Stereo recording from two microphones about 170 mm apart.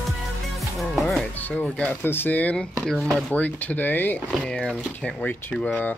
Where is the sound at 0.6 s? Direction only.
Centre (ahead or behind).